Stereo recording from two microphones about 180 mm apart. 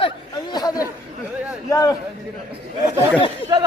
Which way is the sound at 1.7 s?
20° left (ahead or behind).